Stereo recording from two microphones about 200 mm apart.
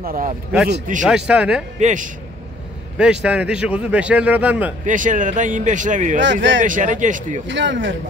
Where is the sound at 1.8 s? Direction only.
35° right (ahead or behind).